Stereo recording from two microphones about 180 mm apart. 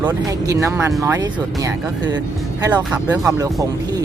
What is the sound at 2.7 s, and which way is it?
Speech, 10° right (ahead or behind).